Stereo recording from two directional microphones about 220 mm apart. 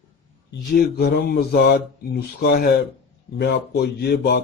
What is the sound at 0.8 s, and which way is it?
Speech, 45° left (ahead or behind).